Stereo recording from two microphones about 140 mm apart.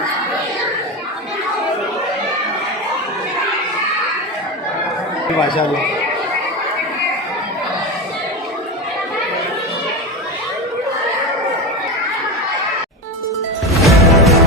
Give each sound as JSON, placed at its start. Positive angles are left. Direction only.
{"t": 5.4, "sound": "speech", "side_deg": 35}
{"t": 13.8, "sound": "music", "side_deg": 0}